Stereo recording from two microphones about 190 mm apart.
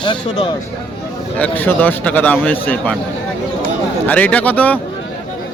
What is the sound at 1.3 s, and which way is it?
A man's voice, 10° left (ahead or behind).